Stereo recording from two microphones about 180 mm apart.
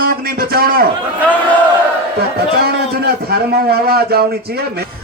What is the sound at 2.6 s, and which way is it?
A man's voice, 60° right (ahead or behind).